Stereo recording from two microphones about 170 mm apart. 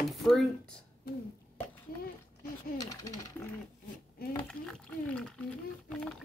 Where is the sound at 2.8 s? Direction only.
20° left (ahead or behind).